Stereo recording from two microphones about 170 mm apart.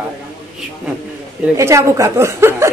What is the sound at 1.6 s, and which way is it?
A woman's voice, 15° right (ahead or behind).